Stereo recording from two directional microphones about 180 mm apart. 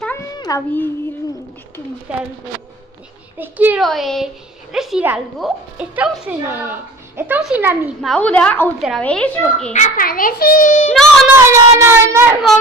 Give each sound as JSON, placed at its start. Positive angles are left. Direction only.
{"t": 0.4, "sound": "a child's voice", "side_deg": 20}
{"t": 2.1, "sound": "a woman's voice", "side_deg": -5}
{"t": 3.3, "sound": "a woman's voice", "side_deg": -10}
{"t": 8.1, "sound": "a woman's voice", "side_deg": 5}
{"t": 9.7, "sound": "a child's voice", "side_deg": 45}
{"t": 11.2, "sound": "a woman's voice", "side_deg": -15}